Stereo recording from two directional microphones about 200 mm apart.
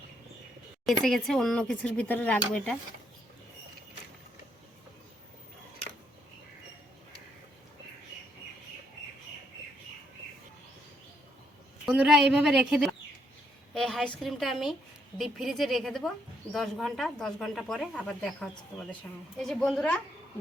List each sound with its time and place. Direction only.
0.9 s speech: centre (ahead or behind)
11.9 s speech: 5° right (ahead or behind)